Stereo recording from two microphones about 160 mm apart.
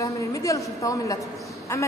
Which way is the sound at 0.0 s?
20° left (ahead or behind).